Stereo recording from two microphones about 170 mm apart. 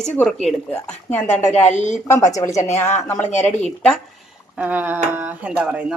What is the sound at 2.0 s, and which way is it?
Speech, 20° left (ahead or behind).